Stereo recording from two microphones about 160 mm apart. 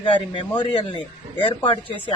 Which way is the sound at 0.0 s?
30° left (ahead or behind).